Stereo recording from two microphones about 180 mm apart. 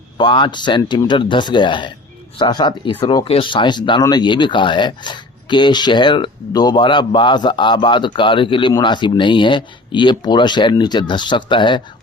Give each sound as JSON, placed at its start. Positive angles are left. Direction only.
{"t": 0.2, "sound": "speech", "side_deg": 25}